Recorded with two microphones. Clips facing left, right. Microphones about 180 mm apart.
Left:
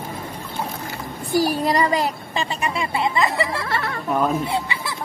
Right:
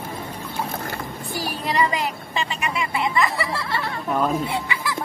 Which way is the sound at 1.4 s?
40° left (ahead or behind).